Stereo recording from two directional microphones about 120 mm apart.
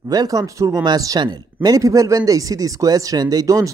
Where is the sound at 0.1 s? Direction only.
30° right (ahead or behind).